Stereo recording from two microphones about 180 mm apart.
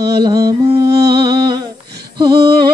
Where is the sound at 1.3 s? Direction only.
25° right (ahead or behind).